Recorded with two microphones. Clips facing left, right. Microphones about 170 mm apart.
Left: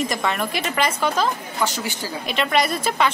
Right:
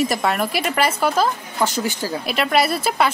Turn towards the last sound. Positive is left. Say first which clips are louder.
# right 2 dB
turn(degrees=-5)  # may be behind; listen again after turning